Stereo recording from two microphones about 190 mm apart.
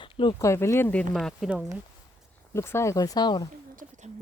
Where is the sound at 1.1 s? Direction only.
Centre (ahead or behind).